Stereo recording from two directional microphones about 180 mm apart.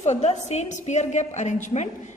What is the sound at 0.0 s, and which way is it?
A woman's voice, 40° left (ahead or behind).